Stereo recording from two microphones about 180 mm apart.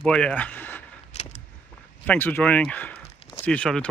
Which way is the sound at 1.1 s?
40° left (ahead or behind).